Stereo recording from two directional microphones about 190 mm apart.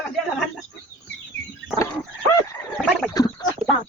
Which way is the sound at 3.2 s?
20° left (ahead or behind).